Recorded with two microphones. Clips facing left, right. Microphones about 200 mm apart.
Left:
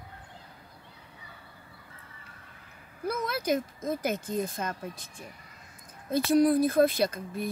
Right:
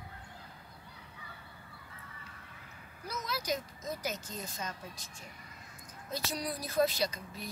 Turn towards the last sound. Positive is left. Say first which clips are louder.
# left 7 dB
turn(degrees=55)  # may be behind; listen again after turning